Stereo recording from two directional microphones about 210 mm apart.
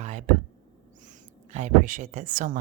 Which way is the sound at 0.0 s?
35° right (ahead or behind).